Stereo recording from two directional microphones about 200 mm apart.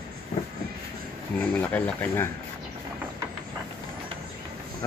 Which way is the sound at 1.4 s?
10° left (ahead or behind).